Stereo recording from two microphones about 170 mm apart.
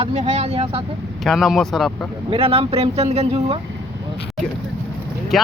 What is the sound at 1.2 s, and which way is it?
Speech, centre (ahead or behind).